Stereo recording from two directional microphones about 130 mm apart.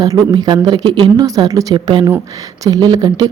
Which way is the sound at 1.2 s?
25° right (ahead or behind).